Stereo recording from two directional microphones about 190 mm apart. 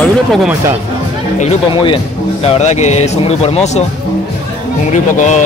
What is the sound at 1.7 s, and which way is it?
A man's voice, 25° left (ahead or behind).